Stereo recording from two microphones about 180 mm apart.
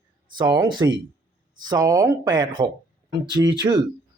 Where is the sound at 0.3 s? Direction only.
20° right (ahead or behind).